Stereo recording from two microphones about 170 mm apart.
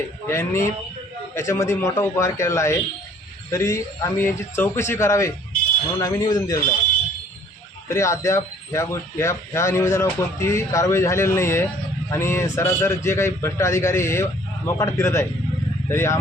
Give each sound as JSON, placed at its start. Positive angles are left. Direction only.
{"t": 0.3, "sound": "speech", "side_deg": 15}
{"t": 7.9, "sound": "speech", "side_deg": 15}